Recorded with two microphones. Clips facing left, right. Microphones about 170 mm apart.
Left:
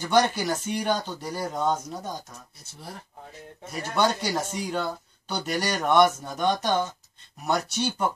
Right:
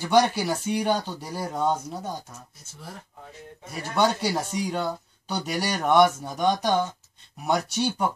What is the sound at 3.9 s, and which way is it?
Speech, 10° right (ahead or behind).